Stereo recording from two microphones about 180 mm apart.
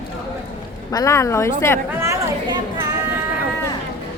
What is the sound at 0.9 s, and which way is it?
Speech, 15° left (ahead or behind).